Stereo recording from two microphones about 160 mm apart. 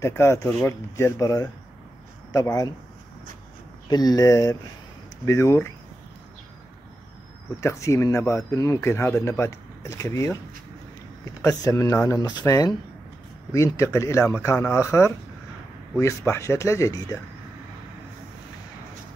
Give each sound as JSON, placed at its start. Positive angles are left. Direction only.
{"t": 0.0, "sound": "speech", "side_deg": 15}
{"t": 3.9, "sound": "speech", "side_deg": 25}
{"t": 7.6, "sound": "speech", "side_deg": 20}
{"t": 11.6, "sound": "speech", "side_deg": 20}